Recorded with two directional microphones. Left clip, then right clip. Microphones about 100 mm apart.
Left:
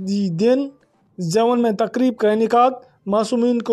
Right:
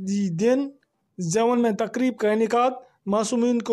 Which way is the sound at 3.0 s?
5° left (ahead or behind).